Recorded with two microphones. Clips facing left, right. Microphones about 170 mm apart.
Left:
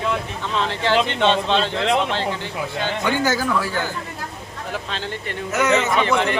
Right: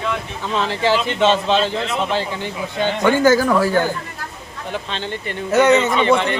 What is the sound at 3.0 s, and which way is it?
Speech, 50° right (ahead or behind).